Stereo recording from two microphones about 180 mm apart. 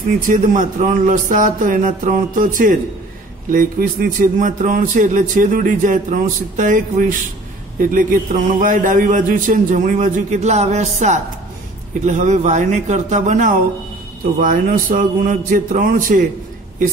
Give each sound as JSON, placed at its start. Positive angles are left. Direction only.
{"t": 0.3, "sound": "a man's voice", "side_deg": -45}